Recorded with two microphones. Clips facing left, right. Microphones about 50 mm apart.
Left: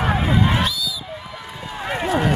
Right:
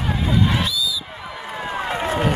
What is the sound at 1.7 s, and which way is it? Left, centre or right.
Run, right.